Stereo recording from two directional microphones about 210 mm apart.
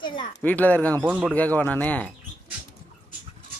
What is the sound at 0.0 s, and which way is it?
Speech, 20° left (ahead or behind).